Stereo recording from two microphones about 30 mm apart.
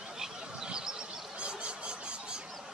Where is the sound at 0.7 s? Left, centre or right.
Right.